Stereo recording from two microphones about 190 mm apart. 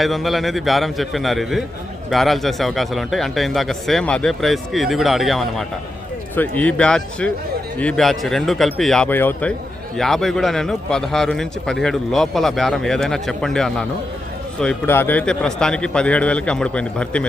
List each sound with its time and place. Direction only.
0.0 s a man's voice: centre (ahead or behind)